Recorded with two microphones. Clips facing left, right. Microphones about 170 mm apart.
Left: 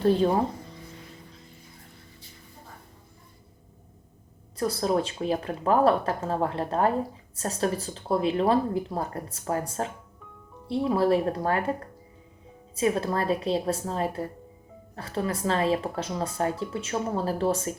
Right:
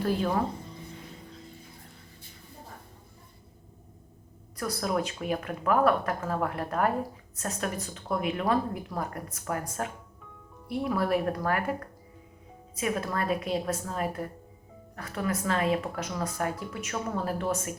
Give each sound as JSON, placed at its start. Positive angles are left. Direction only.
{"t": 0.0, "sound": "speech", "side_deg": 30}
{"t": 4.5, "sound": "speech", "side_deg": 25}